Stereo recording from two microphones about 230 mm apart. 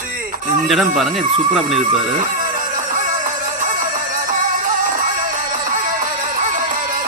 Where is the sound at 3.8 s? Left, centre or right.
Right.